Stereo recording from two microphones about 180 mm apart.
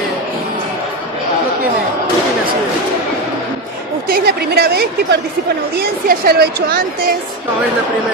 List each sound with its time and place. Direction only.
4.1 s a woman's voice: 60° right (ahead or behind)